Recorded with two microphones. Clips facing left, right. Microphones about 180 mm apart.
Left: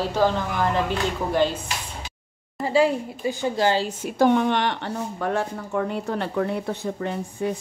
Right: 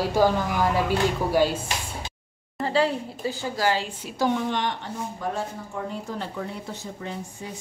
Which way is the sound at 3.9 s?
50° left (ahead or behind).